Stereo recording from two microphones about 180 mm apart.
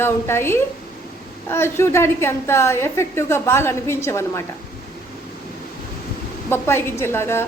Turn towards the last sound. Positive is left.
turn(degrees=15)  # may be behind; listen again after turning